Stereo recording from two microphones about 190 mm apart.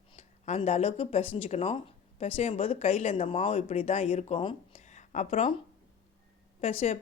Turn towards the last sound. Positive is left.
turn(degrees=35)  # may be behind; listen again after turning